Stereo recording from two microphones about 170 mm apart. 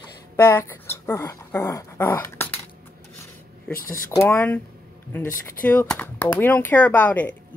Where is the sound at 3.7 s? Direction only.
60° left (ahead or behind).